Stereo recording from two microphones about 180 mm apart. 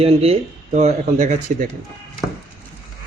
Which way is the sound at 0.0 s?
35° right (ahead or behind).